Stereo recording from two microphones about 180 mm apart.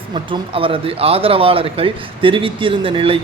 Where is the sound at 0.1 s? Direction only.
30° right (ahead or behind).